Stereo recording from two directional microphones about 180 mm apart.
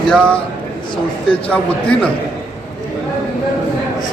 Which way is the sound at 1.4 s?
5° left (ahead or behind).